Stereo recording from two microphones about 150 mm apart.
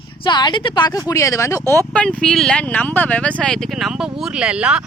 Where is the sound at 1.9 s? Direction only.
5° left (ahead or behind).